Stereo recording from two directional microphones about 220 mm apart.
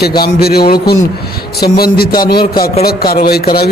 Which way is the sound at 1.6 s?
45° left (ahead or behind).